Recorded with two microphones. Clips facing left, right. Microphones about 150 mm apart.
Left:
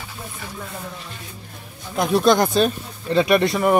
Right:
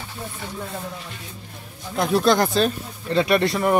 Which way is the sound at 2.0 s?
15° left (ahead or behind).